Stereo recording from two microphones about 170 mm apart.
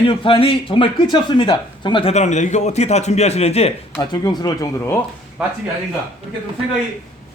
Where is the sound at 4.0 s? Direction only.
25° left (ahead or behind).